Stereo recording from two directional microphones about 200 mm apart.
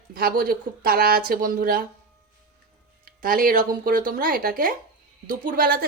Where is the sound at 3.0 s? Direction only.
45° right (ahead or behind).